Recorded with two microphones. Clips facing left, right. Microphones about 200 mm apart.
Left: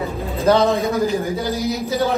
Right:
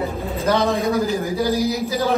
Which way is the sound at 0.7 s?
Centre (ahead or behind).